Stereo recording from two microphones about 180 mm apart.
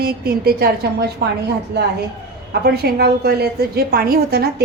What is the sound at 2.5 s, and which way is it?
A woman's voice, 60° right (ahead or behind).